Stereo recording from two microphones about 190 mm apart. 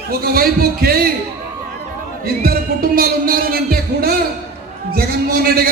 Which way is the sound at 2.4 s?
50° right (ahead or behind).